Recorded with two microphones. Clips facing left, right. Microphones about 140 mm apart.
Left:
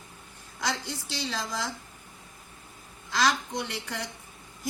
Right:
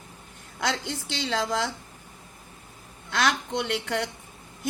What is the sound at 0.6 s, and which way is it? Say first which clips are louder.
A woman's voice: right 3 dB; 65° right (ahead or behind).